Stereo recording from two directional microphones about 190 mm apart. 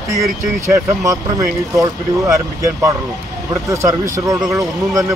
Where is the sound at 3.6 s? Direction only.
15° right (ahead or behind).